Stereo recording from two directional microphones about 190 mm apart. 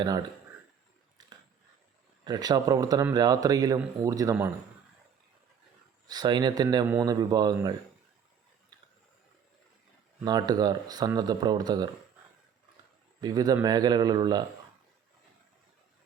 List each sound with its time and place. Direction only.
2.2 s speech: 20° right (ahead or behind)
6.1 s speech: 20° right (ahead or behind)
10.2 s speech: 20° right (ahead or behind)
13.2 s speech: 20° right (ahead or behind)